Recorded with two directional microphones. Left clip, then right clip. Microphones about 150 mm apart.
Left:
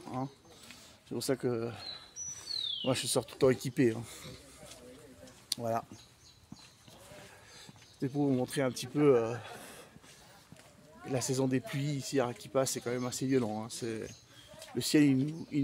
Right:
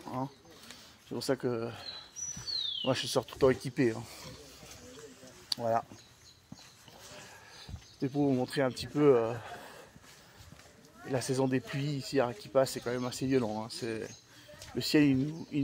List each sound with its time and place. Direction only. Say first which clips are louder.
1.1 s speech: right 1 dB; 25° left (ahead or behind)
5.5 s speech: right 4 dB; 25° left (ahead or behind)
8.0 s speech: right 1 dB; 15° left (ahead or behind)
11.1 s speech: right 1 dB; 15° left (ahead or behind)